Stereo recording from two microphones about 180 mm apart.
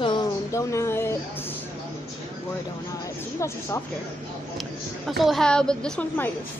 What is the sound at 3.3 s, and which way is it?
Speech, 15° left (ahead or behind).